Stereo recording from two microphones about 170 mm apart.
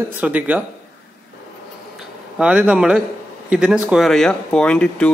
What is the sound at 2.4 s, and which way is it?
Speech, 5° right (ahead or behind).